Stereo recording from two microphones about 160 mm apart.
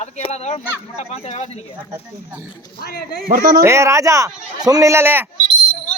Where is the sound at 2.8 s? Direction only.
75° left (ahead or behind).